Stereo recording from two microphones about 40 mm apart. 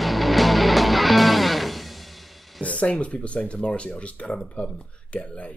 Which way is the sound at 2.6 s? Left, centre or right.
Left.